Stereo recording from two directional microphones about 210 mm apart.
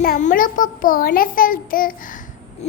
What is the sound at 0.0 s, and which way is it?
A child's voice, 40° left (ahead or behind).